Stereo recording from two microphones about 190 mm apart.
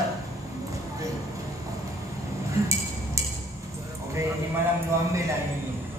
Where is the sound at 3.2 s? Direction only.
15° right (ahead or behind).